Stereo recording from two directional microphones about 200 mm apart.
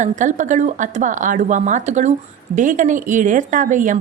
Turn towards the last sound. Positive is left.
turn(degrees=-40)  # may be behind; listen again after turning